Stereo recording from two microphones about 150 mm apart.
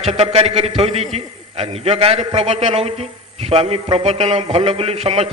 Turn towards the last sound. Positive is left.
turn(degrees=-40)  # may be behind; listen again after turning